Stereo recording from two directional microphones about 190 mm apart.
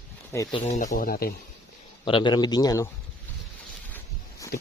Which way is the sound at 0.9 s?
50° left (ahead or behind).